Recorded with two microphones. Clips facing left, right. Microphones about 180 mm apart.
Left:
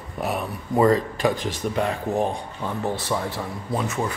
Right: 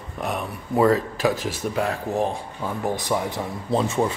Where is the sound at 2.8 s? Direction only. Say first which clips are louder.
Right 2 dB; 15° right (ahead or behind).